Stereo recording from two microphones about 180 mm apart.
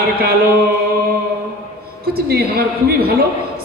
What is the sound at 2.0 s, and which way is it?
Vocal music, 60° right (ahead or behind).